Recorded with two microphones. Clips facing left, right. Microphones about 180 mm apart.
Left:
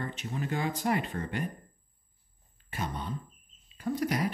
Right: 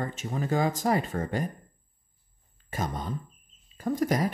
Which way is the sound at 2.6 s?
45° right (ahead or behind).